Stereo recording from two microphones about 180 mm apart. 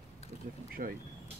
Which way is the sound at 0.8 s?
50° right (ahead or behind).